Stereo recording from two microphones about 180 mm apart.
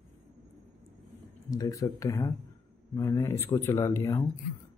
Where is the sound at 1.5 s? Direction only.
20° left (ahead or behind).